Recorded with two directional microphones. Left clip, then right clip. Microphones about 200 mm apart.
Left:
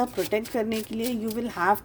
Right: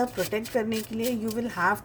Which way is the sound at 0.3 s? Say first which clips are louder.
Left 1 dB; 45° left (ahead or behind).